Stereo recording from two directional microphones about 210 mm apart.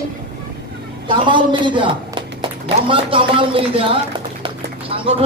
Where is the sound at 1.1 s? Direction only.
20° right (ahead or behind).